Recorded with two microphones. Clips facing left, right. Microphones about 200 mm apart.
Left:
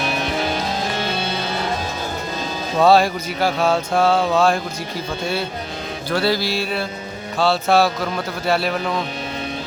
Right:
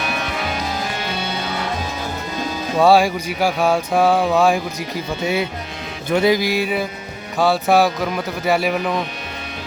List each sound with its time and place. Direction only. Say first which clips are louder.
2.7 s speech: right 1 dB; 10° right (ahead or behind)
6.1 s speech: right 4 dB; 15° right (ahead or behind)